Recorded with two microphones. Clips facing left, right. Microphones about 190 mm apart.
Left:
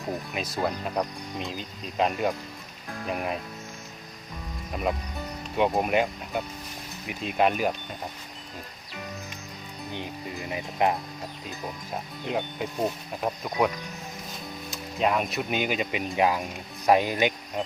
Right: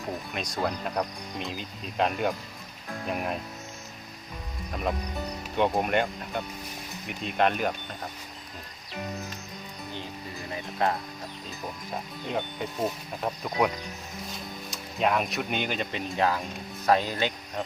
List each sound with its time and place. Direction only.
0.3 s speech: 5° left (ahead or behind)
4.7 s speech: 5° left (ahead or behind)
10.5 s speech: 15° left (ahead or behind)
12.3 s speech: 5° left (ahead or behind)
14.7 s speech: centre (ahead or behind)